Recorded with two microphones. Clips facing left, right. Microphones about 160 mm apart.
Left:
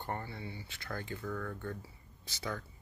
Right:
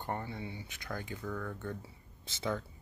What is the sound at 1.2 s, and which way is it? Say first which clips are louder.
Speech: even; 5° right (ahead or behind).